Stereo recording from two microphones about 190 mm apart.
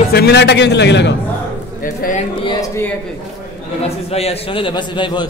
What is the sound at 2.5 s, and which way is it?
Speech, 20° left (ahead or behind).